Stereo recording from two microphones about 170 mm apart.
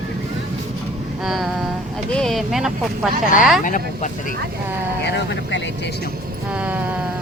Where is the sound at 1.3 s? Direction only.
Centre (ahead or behind).